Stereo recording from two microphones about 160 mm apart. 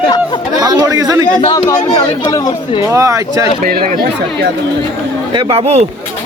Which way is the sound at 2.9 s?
20° right (ahead or behind).